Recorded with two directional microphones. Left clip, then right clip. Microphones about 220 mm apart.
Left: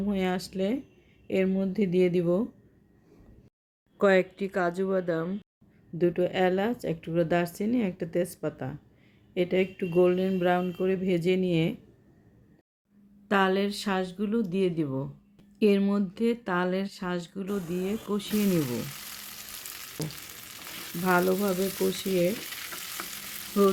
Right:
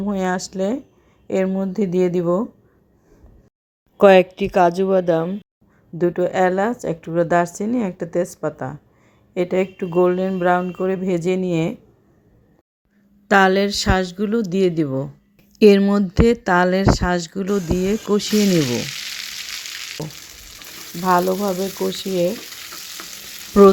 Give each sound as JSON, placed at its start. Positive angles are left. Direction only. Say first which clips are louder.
{"t": 0.0, "sound": "a woman's voice", "louder": "right 8 dB", "side_deg": -15}
{"t": 3.9, "sound": "a woman's voice", "louder": "right 12 dB", "side_deg": -25}
{"t": 13.2, "sound": "speech", "louder": "right 11 dB", "side_deg": -30}
{"t": 21.0, "sound": "a woman's voice", "louder": "right 8 dB", "side_deg": -10}